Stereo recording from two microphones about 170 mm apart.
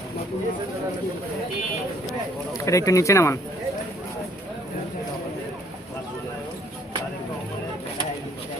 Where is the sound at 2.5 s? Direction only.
20° left (ahead or behind).